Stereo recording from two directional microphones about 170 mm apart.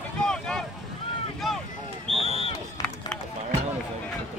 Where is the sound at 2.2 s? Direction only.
35° left (ahead or behind).